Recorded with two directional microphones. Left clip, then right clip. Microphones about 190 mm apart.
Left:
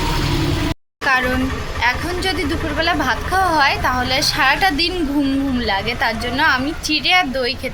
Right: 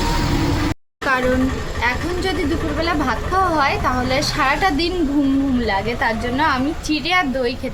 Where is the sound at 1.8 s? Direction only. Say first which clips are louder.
Left 2 dB; 5° right (ahead or behind).